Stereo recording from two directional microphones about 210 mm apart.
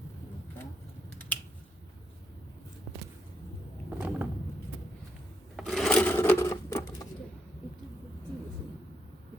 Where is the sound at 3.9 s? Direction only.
5° right (ahead or behind).